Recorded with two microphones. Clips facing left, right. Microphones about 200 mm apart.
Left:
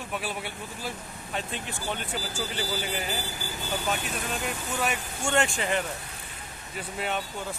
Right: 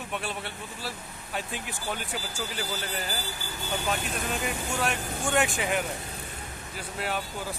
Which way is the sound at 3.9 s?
Centre (ahead or behind).